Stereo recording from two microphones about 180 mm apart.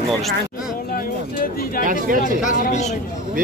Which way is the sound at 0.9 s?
55° left (ahead or behind).